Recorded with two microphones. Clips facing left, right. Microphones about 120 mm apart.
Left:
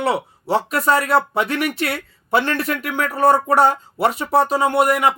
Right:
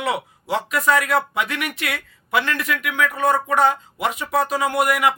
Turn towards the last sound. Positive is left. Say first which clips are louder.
# left 3 dB
turn(degrees=30)  # may be behind; listen again after turning